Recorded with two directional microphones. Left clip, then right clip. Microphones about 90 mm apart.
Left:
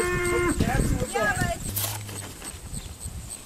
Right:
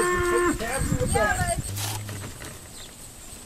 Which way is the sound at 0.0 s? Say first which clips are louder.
Right 2 dB; 35° left (ahead or behind).